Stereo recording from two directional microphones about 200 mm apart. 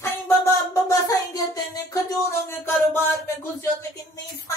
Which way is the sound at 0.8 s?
15° left (ahead or behind).